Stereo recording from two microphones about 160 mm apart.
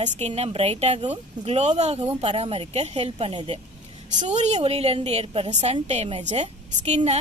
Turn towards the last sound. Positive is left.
turn(degrees=-40)  # may be behind; listen again after turning